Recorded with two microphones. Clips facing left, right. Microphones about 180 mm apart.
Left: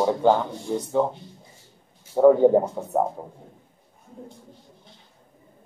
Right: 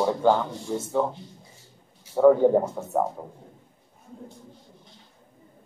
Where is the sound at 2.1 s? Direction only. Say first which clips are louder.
Left 2 dB; 15° left (ahead or behind).